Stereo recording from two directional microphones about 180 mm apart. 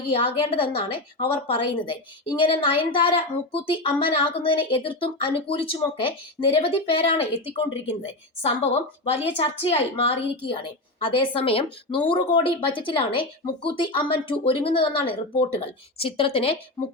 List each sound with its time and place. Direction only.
0.1 s a woman's voice: 30° left (ahead or behind)